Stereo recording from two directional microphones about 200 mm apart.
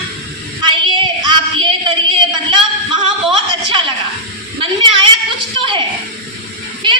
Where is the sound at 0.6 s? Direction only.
25° right (ahead or behind).